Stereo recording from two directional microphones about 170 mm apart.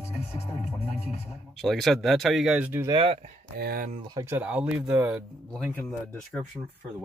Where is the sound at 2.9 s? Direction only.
30° right (ahead or behind).